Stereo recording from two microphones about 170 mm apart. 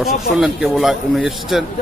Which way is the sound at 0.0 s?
Centre (ahead or behind).